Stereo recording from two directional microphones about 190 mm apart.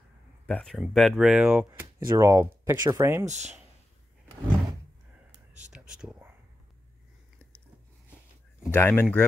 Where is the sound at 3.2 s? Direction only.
35° right (ahead or behind).